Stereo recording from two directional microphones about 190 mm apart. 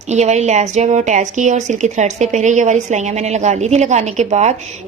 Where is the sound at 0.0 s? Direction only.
35° right (ahead or behind).